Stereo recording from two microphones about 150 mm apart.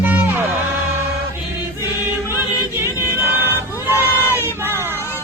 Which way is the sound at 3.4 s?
15° right (ahead or behind).